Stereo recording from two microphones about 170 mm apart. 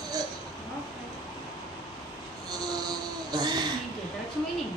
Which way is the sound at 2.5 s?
25° right (ahead or behind).